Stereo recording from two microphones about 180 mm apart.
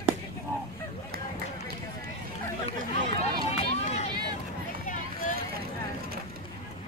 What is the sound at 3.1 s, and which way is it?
Run, 35° left (ahead or behind).